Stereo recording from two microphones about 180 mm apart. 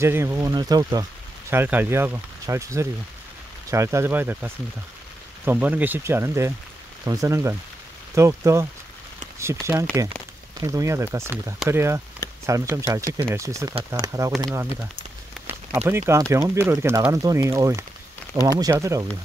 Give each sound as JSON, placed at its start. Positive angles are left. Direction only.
{"t": 0.0, "sound": "speech", "side_deg": -15}